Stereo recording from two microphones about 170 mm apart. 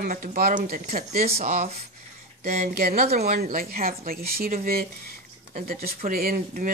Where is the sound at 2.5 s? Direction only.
60° right (ahead or behind).